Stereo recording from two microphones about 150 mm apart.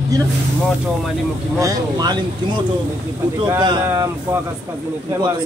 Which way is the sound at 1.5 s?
25° right (ahead or behind).